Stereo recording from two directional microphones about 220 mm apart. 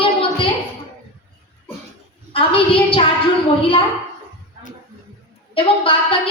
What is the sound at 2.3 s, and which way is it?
Speech, 25° left (ahead or behind).